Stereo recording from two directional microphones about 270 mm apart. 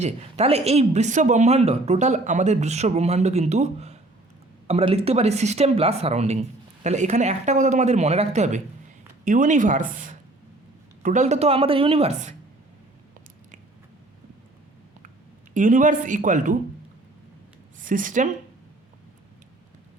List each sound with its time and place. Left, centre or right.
0.0 s speech: right
15.5 s speech: right
17.7 s speech: right